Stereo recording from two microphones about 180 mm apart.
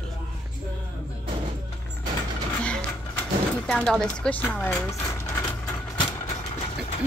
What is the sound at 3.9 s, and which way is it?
Speech, 5° left (ahead or behind).